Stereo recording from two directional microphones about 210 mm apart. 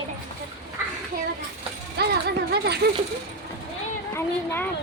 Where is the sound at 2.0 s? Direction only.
50° right (ahead or behind).